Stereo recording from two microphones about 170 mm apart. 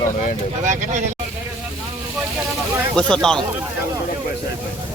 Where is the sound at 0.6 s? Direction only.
45° right (ahead or behind).